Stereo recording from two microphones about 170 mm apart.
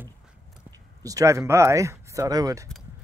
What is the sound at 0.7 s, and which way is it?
Speech, 20° right (ahead or behind).